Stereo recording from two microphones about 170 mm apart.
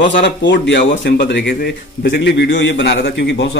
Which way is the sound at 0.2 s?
90° left.